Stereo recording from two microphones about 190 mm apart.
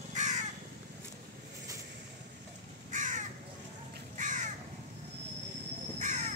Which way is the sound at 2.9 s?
40° right (ahead or behind).